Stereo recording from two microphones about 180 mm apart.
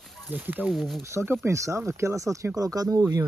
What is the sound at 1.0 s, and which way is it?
Speech, 15° right (ahead or behind).